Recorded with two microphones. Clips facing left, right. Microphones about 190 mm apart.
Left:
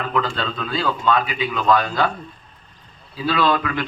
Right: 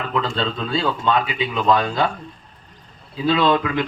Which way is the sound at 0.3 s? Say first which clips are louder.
Right 2 dB; 25° right (ahead or behind).